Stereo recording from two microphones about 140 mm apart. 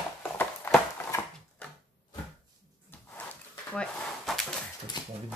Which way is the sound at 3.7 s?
Centre (ahead or behind).